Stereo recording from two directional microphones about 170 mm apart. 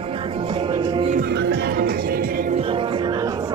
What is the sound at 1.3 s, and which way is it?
Music, 80° right.